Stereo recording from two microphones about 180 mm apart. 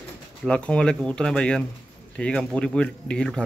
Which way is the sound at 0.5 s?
5° left (ahead or behind).